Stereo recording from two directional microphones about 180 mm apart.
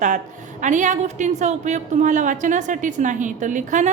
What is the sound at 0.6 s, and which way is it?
A woman's voice, 45° right (ahead or behind).